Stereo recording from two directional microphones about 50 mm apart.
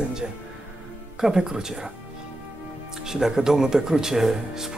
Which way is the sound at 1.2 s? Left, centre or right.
Centre.